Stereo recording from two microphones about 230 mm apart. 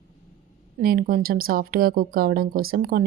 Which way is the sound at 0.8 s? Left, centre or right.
Right.